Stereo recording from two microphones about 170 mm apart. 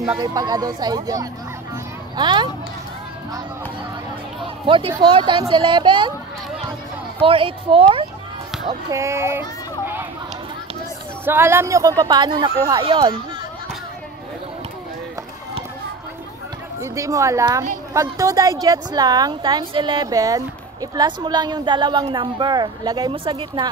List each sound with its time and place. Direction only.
0.2 s speech: 25° right (ahead or behind)
4.6 s speech: 30° right (ahead or behind)
7.2 s a woman's voice: 30° right (ahead or behind)
8.9 s speech: 15° right (ahead or behind)
11.2 s speech: 15° right (ahead or behind)
16.8 s speech: 20° right (ahead or behind)